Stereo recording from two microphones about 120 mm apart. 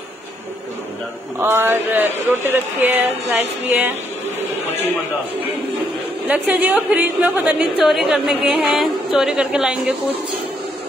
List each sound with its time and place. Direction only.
1.4 s a woman's voice: 20° right (ahead or behind)
6.2 s a woman's voice: 15° right (ahead or behind)